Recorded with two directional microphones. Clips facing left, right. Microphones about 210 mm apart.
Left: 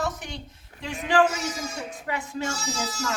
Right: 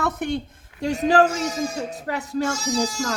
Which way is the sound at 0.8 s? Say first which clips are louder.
Right 4 dB; 40° right (ahead or behind).